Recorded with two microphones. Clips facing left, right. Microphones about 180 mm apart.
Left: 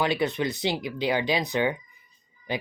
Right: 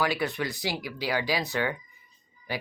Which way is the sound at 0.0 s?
20° left (ahead or behind).